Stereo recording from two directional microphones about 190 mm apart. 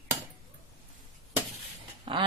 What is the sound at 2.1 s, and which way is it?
Duck, 25° right (ahead or behind).